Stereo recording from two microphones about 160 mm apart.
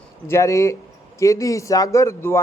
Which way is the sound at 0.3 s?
20° left (ahead or behind).